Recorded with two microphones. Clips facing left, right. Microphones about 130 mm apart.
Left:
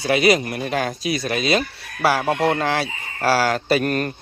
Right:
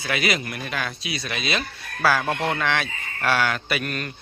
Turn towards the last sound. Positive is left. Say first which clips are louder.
# left 8 dB
turn(degrees=40)  # may be behind; listen again after turning